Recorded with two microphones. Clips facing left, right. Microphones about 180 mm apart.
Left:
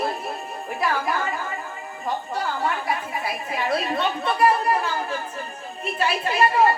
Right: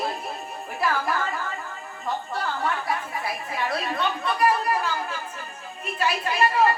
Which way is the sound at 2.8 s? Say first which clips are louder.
Left 2 dB; 20° left (ahead or behind).